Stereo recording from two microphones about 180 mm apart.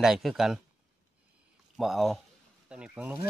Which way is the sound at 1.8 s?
Centre (ahead or behind).